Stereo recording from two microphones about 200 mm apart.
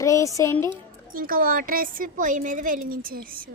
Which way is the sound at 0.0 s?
15° left (ahead or behind).